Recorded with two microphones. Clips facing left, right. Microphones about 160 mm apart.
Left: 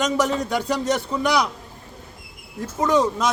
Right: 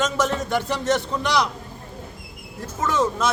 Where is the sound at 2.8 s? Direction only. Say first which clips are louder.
Left 3 dB; 15° left (ahead or behind).